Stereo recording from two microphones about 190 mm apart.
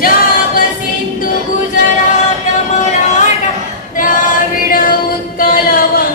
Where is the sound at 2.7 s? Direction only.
40° left (ahead or behind).